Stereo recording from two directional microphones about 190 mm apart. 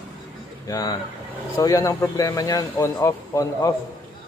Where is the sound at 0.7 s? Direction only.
20° left (ahead or behind).